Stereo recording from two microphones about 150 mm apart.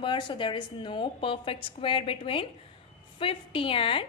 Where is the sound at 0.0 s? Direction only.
35° left (ahead or behind).